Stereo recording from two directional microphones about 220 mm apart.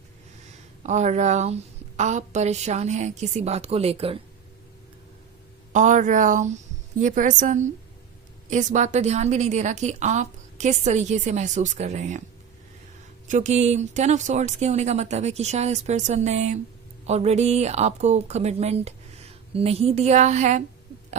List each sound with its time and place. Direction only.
0.8 s a woman's voice: 30° right (ahead or behind)
5.7 s a woman's voice: 35° right (ahead or behind)
13.2 s a woman's voice: 35° right (ahead or behind)